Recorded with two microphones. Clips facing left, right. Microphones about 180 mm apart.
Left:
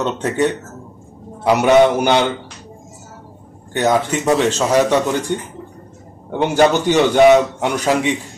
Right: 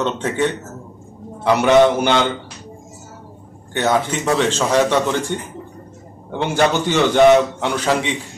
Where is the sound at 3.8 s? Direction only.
10° left (ahead or behind).